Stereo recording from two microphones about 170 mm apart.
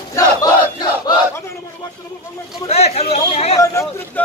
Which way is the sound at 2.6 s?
40° left (ahead or behind).